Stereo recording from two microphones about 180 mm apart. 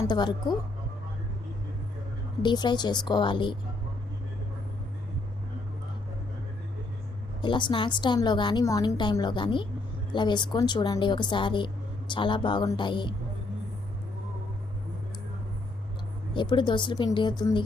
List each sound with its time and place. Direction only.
0.1 s a woman's voice: 25° left (ahead or behind)
2.4 s a woman's voice: 25° left (ahead or behind)
7.4 s a woman's voice: 25° left (ahead or behind)
16.3 s a woman's voice: 25° left (ahead or behind)